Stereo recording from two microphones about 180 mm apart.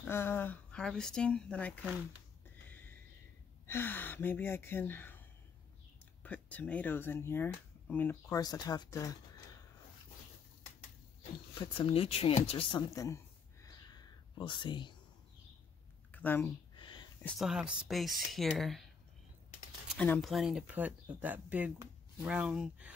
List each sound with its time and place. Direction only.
0.0 s speech: 10° left (ahead or behind)
2.7 s a sound: 10° left (ahead or behind)
3.6 s speech: 10° left (ahead or behind)
6.2 s speech: 10° left (ahead or behind)
11.6 s speech: 30° left (ahead or behind)
12.9 s a sound: 15° left (ahead or behind)
16.1 s speech: 10° left (ahead or behind)
16.7 s a sound: 25° left (ahead or behind)
17.2 s speech: centre (ahead or behind)
20.0 s speech: 5° left (ahead or behind)